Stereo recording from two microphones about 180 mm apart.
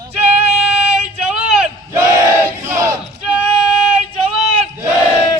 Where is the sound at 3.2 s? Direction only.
5° right (ahead or behind).